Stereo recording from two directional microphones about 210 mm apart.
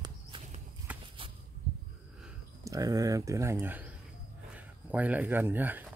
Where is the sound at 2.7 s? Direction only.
15° right (ahead or behind).